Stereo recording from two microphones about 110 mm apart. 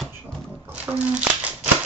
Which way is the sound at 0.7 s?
15° right (ahead or behind).